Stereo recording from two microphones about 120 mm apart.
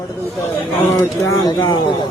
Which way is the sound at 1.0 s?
25° left (ahead or behind).